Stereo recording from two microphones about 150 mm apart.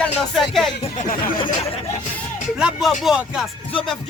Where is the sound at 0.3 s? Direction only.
Centre (ahead or behind).